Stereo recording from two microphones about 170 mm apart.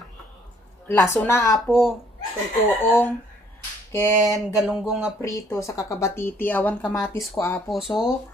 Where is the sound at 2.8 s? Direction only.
10° left (ahead or behind).